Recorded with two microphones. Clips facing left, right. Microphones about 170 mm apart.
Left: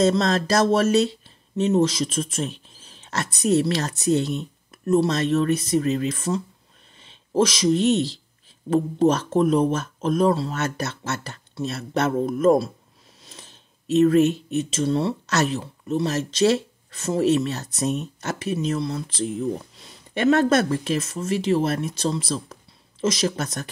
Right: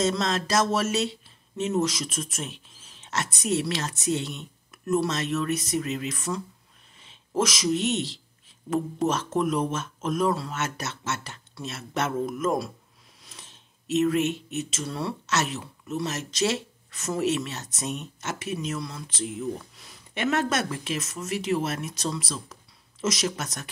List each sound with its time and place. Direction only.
0.0 s speech: 35° left (ahead or behind)